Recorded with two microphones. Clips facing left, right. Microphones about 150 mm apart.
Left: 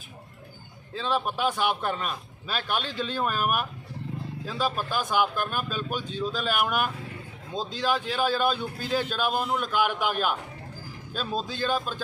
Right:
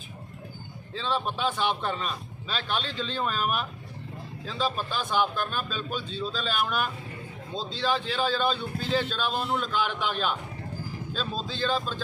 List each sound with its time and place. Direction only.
1.0 s a man's voice: 10° left (ahead or behind)
11.1 s a man's voice: 10° left (ahead or behind)